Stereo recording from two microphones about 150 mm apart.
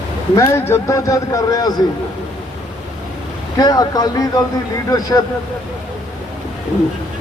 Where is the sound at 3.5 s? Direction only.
25° left (ahead or behind).